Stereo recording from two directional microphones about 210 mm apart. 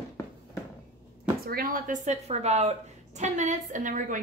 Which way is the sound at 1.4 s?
40° right (ahead or behind).